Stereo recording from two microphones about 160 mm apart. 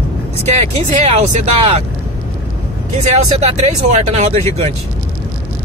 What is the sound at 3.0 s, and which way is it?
Speech, 45° right (ahead or behind).